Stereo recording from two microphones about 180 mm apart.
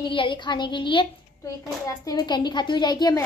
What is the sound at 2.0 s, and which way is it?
A woman's voice, 25° left (ahead or behind).